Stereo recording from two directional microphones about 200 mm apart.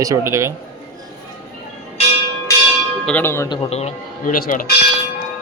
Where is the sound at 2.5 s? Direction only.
15° left (ahead or behind).